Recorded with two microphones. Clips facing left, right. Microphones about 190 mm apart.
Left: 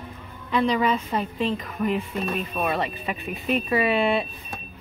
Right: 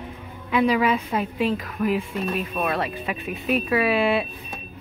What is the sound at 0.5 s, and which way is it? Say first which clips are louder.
A woman's voice: right 2 dB; 5° right (ahead or behind).